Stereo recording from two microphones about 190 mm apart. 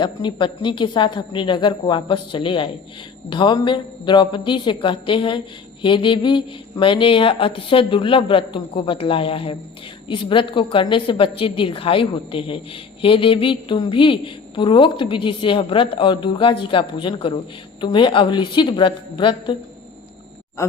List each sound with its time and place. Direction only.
0.0 s a woman's voice: 25° left (ahead or behind)